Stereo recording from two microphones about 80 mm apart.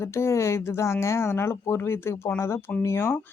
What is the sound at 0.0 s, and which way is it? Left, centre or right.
Speech, left.